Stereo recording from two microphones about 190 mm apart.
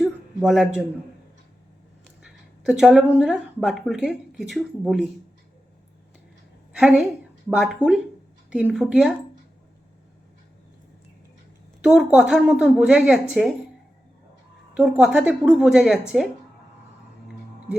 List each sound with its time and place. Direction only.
0.0 s a sound: centre (ahead or behind)
2.0 s speech: centre (ahead or behind)
6.7 s a woman's voice: 5° right (ahead or behind)
11.8 s a woman's voice: 5° right (ahead or behind)
14.8 s a woman's voice: 5° right (ahead or behind)